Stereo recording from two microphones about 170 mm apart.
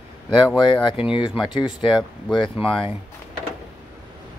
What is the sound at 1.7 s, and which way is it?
Speech, 25° left (ahead or behind).